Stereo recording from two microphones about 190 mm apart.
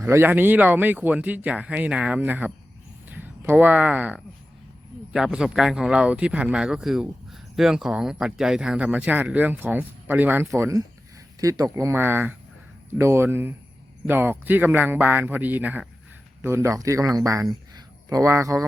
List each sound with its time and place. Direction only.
0.0 s speech: 15° right (ahead or behind)